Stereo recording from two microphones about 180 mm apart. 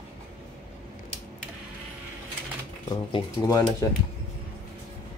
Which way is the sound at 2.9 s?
20° left (ahead or behind).